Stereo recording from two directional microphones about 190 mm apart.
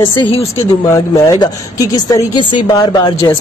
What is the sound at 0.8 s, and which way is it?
A woman's voice, 15° left (ahead or behind).